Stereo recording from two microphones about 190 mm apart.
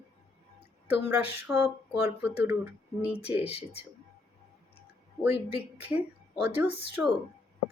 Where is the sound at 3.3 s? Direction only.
30° left (ahead or behind).